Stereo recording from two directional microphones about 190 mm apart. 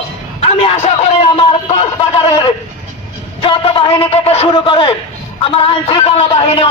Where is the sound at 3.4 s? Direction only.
25° left (ahead or behind).